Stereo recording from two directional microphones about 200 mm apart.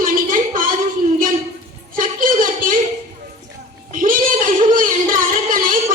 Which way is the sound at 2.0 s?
45° right (ahead or behind).